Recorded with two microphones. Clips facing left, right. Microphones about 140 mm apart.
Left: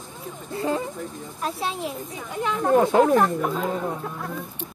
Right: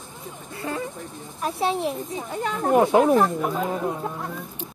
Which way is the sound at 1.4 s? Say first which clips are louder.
Right 3 dB; 20° right (ahead or behind).